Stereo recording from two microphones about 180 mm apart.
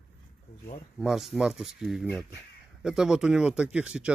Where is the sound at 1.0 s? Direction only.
Centre (ahead or behind).